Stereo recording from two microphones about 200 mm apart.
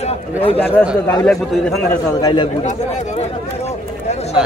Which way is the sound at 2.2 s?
20° left (ahead or behind).